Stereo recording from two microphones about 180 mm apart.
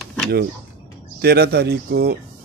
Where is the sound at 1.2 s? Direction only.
65° right (ahead or behind).